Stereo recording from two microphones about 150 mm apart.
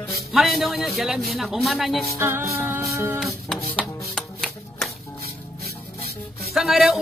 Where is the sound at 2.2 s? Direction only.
15° right (ahead or behind).